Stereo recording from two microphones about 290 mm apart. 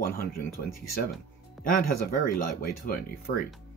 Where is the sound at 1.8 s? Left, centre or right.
Left.